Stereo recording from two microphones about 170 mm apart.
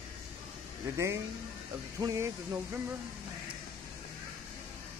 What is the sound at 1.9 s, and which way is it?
Speech, 20° right (ahead or behind).